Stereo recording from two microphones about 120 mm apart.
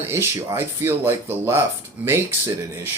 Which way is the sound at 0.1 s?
20° right (ahead or behind).